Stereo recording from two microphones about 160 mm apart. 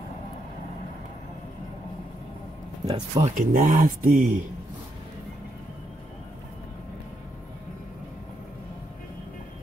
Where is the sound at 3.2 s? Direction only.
55° right (ahead or behind).